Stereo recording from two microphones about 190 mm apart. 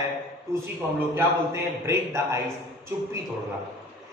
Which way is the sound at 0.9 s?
10° right (ahead or behind).